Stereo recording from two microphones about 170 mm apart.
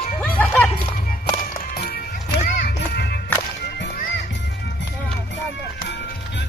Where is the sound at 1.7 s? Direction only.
60° left (ahead or behind).